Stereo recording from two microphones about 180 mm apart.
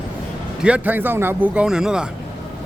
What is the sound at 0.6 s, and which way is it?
Speech, 10° right (ahead or behind).